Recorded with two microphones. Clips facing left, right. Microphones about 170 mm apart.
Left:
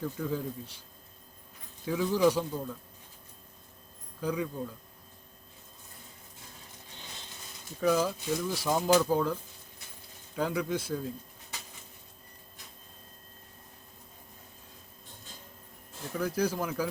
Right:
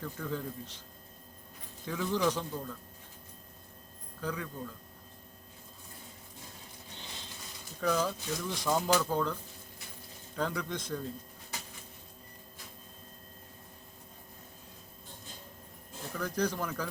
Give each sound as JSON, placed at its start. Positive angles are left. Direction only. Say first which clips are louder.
{"t": 0.0, "sound": "speech", "louder": "left 4 dB", "side_deg": 10}
{"t": 1.8, "sound": "speech", "louder": "left 5 dB", "side_deg": 10}
{"t": 4.2, "sound": "speech", "louder": "left 5 dB", "side_deg": 15}
{"t": 7.8, "sound": "speech", "louder": "left 4 dB", "side_deg": 10}
{"t": 16.1, "sound": "speech", "louder": "left 3 dB", "side_deg": 10}